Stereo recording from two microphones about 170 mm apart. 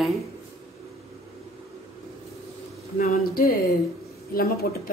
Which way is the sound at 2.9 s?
55° left (ahead or behind).